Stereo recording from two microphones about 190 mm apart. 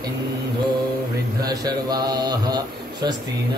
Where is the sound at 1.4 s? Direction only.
20° right (ahead or behind).